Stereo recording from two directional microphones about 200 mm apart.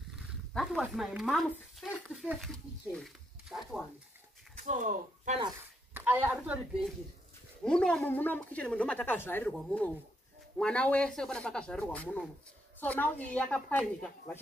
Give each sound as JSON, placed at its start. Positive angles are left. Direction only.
{"t": 0.1, "sound": "speech", "side_deg": 0}
{"t": 4.6, "sound": "speech", "side_deg": -40}
{"t": 5.9, "sound": "a woman's voice", "side_deg": -10}
{"t": 7.6, "sound": "a woman's voice", "side_deg": 5}